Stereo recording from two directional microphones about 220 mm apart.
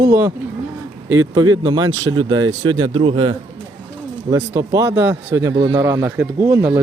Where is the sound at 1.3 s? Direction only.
20° right (ahead or behind).